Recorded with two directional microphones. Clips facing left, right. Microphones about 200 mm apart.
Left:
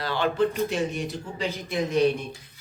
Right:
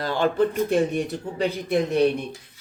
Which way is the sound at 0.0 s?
45° right (ahead or behind).